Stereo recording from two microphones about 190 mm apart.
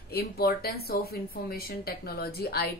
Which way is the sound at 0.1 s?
55° left (ahead or behind).